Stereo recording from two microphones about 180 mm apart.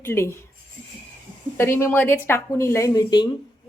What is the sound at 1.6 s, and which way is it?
A woman's voice, 15° left (ahead or behind).